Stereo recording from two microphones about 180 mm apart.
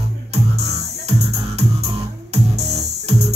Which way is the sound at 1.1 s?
35° right (ahead or behind).